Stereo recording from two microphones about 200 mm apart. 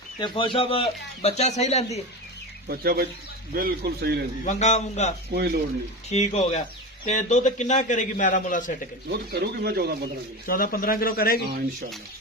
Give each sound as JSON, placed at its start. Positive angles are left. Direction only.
{"t": 0.2, "sound": "a man's voice", "side_deg": 25}
{"t": 2.6, "sound": "speech", "side_deg": -50}
{"t": 4.4, "sound": "a man's voice", "side_deg": 35}
{"t": 5.3, "sound": "speech", "side_deg": -50}
{"t": 6.1, "sound": "a man's voice", "side_deg": 35}
{"t": 9.0, "sound": "speech", "side_deg": -55}
{"t": 10.4, "sound": "speech", "side_deg": 45}